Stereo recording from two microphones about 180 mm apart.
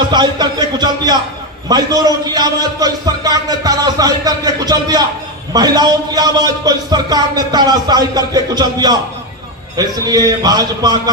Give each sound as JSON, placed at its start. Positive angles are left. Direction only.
{"t": 0.1, "sound": "a man's voice", "side_deg": -25}